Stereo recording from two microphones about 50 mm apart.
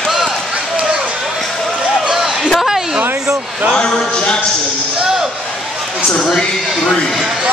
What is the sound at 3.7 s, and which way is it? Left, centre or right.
Speech, centre.